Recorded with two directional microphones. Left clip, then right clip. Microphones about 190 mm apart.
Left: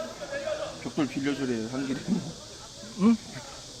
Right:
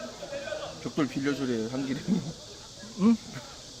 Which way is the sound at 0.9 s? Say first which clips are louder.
Even; 25° right (ahead or behind).